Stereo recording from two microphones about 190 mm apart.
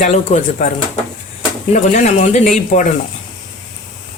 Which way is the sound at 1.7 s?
40° left (ahead or behind).